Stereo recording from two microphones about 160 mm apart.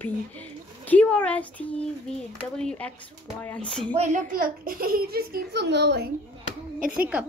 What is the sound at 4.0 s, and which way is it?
A child's voice, 50° right (ahead or behind).